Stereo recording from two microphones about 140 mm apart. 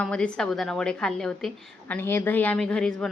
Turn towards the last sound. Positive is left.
turn(degrees=5)  # may be behind; listen again after turning